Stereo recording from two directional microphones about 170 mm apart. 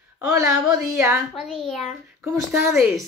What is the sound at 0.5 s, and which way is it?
Speech, 5° right (ahead or behind).